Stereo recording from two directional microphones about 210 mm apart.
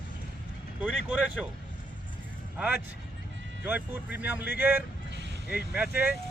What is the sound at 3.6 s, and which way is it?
Speech, 10° right (ahead or behind).